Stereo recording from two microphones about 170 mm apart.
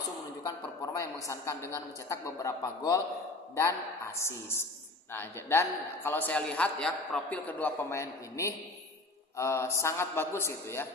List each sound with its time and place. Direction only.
0.9 s a man's voice: 15° left (ahead or behind)